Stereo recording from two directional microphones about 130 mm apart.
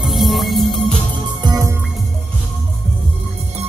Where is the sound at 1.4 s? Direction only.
20° right (ahead or behind).